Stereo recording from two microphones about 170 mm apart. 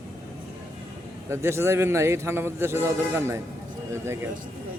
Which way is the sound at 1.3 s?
15° right (ahead or behind).